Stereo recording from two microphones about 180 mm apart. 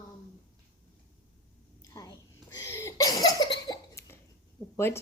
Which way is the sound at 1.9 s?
20° left (ahead or behind).